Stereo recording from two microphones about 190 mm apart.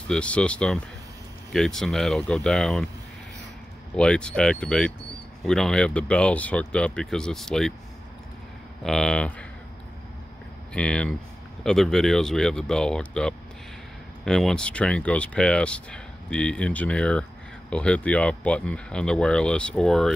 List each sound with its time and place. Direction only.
0.1 s speech: 5° left (ahead or behind)
3.9 s speech: 5° left (ahead or behind)
8.8 s speech: 5° left (ahead or behind)
10.7 s speech: 5° left (ahead or behind)